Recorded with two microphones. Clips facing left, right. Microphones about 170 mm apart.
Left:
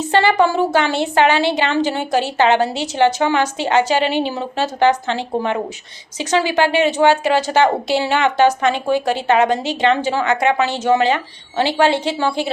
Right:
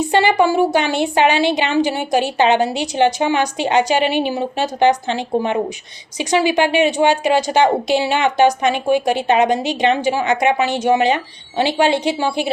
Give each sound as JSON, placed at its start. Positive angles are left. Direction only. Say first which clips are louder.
{"t": 0.0, "sound": "speech", "louder": "even", "side_deg": -15}